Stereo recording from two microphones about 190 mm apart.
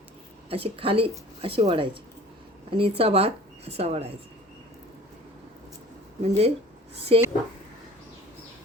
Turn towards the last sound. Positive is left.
turn(degrees=-30)  # may be behind; listen again after turning